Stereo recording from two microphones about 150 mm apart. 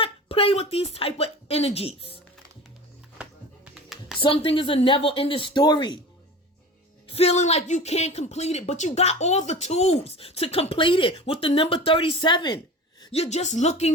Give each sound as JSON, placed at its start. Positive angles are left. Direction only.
{"t": 0.0, "sound": "speech", "side_deg": 40}
{"t": 4.2, "sound": "speech", "side_deg": 35}
{"t": 7.1, "sound": "speech", "side_deg": 45}
{"t": 13.0, "sound": "speech", "side_deg": 40}